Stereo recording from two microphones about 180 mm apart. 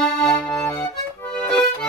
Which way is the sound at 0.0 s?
5° left (ahead or behind).